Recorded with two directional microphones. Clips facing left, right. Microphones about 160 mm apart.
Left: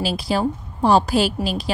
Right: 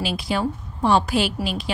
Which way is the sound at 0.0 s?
35° left (ahead or behind).